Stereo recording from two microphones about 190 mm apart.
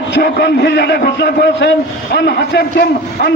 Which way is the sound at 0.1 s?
60° left (ahead or behind).